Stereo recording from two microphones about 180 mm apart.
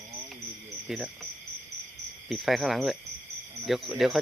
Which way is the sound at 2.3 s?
Centre (ahead or behind).